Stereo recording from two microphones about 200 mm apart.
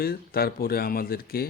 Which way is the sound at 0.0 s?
50° left (ahead or behind).